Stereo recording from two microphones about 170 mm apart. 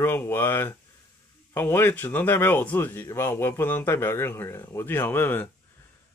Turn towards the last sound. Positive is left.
turn(degrees=10)  # may be behind; listen again after turning